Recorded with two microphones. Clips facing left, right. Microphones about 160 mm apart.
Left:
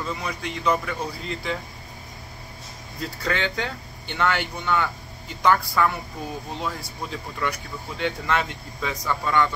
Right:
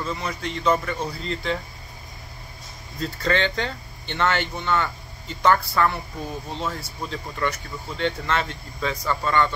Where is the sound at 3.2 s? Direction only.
10° left (ahead or behind).